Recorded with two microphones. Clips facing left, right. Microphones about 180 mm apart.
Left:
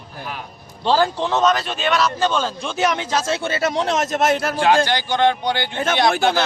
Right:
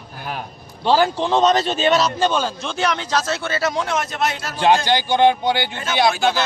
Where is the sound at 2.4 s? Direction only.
Centre (ahead or behind).